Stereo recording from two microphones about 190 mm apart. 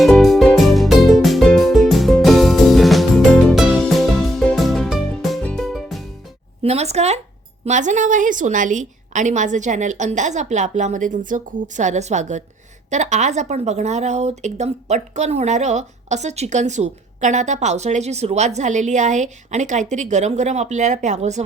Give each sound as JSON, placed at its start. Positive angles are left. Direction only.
{"t": 0.0, "sound": "music", "side_deg": 0}
{"t": 6.6, "sound": "a sound", "side_deg": -35}
{"t": 7.6, "sound": "a woman's voice", "side_deg": -40}